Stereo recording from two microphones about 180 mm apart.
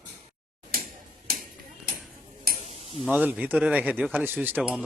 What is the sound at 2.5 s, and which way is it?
Tick-tock, 55° right (ahead or behind).